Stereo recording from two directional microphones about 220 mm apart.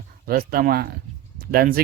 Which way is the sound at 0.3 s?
40° right (ahead or behind).